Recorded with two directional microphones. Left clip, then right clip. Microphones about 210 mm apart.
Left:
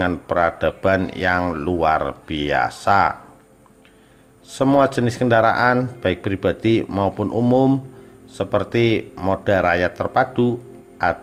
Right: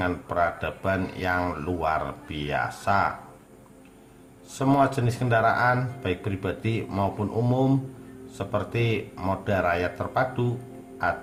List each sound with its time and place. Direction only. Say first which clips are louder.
0.0 s speech: left 6 dB; 35° left (ahead or behind)
4.5 s speech: left 6 dB; 35° left (ahead or behind)